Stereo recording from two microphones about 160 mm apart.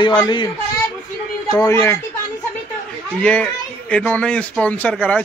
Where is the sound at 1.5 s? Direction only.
25° left (ahead or behind).